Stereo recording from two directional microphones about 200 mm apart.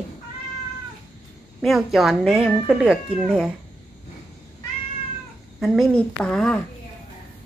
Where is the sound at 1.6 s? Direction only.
Centre (ahead or behind).